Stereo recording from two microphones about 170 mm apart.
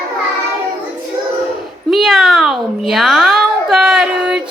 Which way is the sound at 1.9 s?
Centre (ahead or behind).